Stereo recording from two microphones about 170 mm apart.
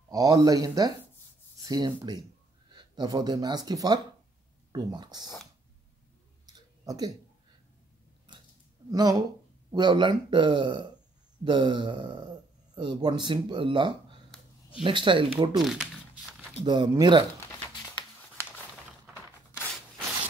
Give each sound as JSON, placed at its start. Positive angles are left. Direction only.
{"t": 0.1, "sound": "speech", "side_deg": -20}
{"t": 5.2, "sound": "speech", "side_deg": 0}
{"t": 6.4, "sound": "clicking", "side_deg": -20}
{"t": 8.3, "sound": "a sound", "side_deg": -25}
{"t": 8.9, "sound": "speech", "side_deg": -25}
{"t": 15.6, "sound": "a sound", "side_deg": 0}
{"t": 16.6, "sound": "speech", "side_deg": -25}